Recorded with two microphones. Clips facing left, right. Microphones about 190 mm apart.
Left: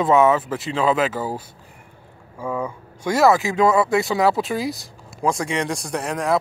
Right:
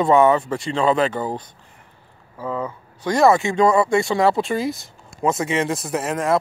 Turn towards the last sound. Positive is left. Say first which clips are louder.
# right 1 dB
turn(degrees=0)  # may be behind; listen again after turning